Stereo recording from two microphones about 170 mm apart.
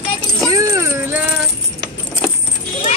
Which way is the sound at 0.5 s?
20° right (ahead or behind).